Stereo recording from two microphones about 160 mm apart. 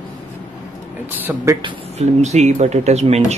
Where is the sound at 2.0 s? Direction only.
45° right (ahead or behind).